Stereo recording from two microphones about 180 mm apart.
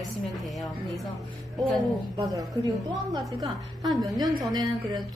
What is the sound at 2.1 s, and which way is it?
A woman's voice, 20° right (ahead or behind).